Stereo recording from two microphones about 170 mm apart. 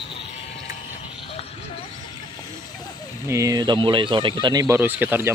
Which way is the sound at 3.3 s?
20° right (ahead or behind).